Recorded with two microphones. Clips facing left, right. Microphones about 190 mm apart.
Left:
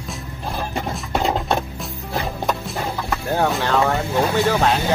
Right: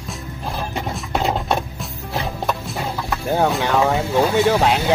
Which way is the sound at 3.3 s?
5° right (ahead or behind).